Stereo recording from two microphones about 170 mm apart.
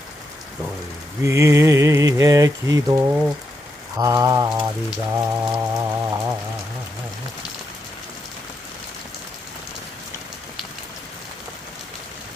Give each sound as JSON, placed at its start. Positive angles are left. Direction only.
{"t": 1.2, "sound": "mantra", "side_deg": -15}
{"t": 3.9, "sound": "rain", "side_deg": -20}
{"t": 5.1, "sound": "mantra", "side_deg": -10}